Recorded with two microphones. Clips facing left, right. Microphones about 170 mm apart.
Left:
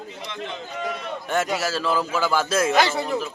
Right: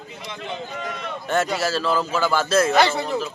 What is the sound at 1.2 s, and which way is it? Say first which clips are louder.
Speech: right 2 dB; 10° left (ahead or behind).